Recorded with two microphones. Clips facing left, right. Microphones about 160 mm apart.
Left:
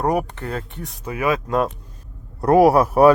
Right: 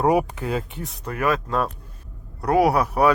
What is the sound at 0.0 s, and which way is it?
Speech, 5° right (ahead or behind).